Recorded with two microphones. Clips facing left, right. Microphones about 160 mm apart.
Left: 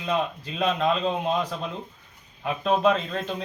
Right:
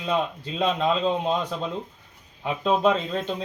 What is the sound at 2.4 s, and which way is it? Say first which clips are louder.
A man's voice: even; 20° right (ahead or behind).